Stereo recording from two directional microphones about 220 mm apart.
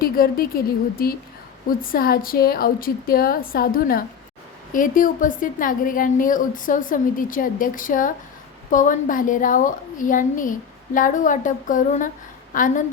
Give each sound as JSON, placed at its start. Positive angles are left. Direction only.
{"t": 0.0, "sound": "a woman's voice", "side_deg": 40}